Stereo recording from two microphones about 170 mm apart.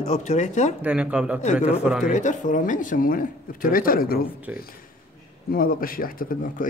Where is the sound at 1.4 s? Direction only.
45° left (ahead or behind); by 4.2 s 60° left (ahead or behind).